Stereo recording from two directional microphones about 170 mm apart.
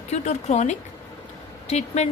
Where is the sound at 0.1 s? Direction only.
40° left (ahead or behind).